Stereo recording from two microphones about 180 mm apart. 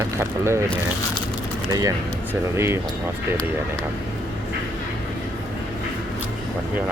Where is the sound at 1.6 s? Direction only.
20° right (ahead or behind).